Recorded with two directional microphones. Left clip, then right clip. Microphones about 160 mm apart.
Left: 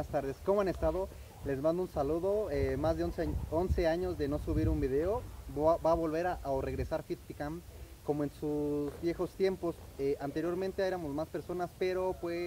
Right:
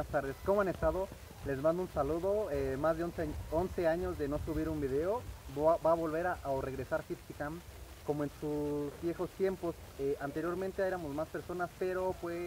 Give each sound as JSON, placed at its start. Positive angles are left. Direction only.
{"t": 0.1, "sound": "speech", "side_deg": 20}